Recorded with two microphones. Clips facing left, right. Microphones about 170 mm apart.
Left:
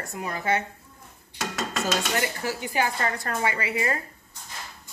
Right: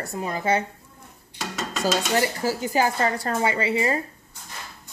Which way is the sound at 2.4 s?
35° right (ahead or behind).